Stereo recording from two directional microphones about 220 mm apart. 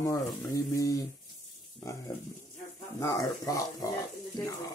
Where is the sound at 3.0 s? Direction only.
15° left (ahead or behind).